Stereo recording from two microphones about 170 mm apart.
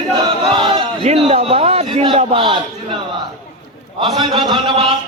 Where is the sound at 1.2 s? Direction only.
35° right (ahead or behind).